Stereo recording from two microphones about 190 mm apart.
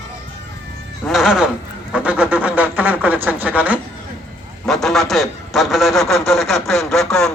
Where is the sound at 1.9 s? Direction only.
5° right (ahead or behind).